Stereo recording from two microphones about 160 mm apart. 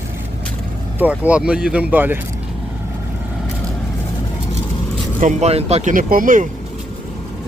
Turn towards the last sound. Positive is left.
turn(degrees=-55)  # may be behind; listen again after turning